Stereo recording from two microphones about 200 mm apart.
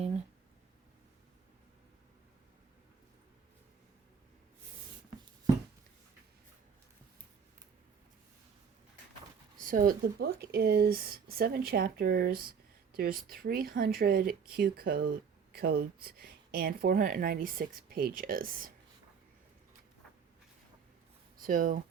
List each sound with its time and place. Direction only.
9.6 s speech: 45° right (ahead or behind)
21.4 s speech: 45° right (ahead or behind)